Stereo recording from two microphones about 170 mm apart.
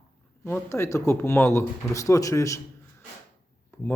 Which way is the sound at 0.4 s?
15° left (ahead or behind).